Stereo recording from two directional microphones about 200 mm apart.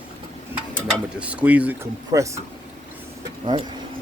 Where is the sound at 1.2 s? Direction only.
5° right (ahead or behind).